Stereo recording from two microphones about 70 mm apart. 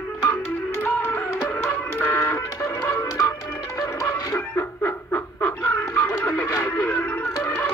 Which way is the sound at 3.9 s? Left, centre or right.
Left.